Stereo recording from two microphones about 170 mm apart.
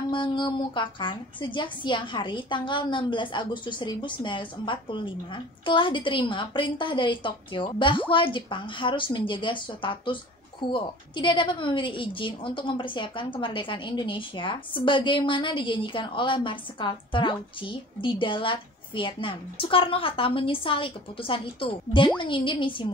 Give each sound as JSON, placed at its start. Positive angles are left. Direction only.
{"t": 0.1, "sound": "a woman's voice", "side_deg": 25}